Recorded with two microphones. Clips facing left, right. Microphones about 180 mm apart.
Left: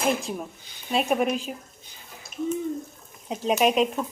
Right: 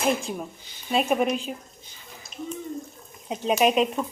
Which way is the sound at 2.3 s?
50° left (ahead or behind).